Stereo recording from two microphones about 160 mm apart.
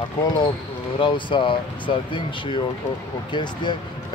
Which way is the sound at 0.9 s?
30° left (ahead or behind).